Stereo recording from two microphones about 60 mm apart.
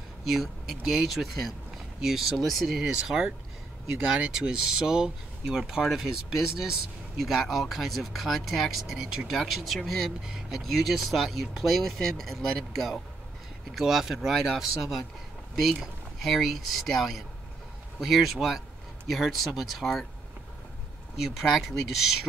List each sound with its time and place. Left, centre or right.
0.2 s speech: centre
2.8 s speech: centre
21.2 s speech: centre